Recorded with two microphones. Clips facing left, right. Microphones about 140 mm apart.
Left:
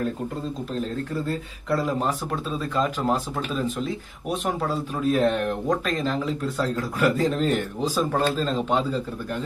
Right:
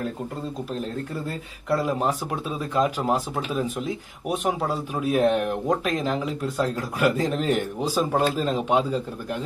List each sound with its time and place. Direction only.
1.7 s speech: 10° right (ahead or behind)